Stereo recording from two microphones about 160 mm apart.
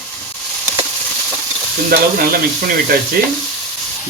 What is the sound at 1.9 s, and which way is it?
Speech, 65° right (ahead or behind).